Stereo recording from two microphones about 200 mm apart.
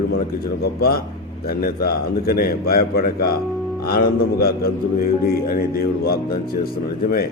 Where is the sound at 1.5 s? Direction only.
50° left (ahead or behind).